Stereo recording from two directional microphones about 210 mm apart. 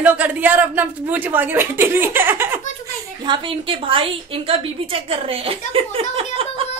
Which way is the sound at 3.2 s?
25° right (ahead or behind).